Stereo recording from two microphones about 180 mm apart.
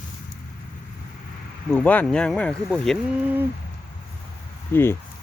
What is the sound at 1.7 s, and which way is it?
Speech, 10° left (ahead or behind).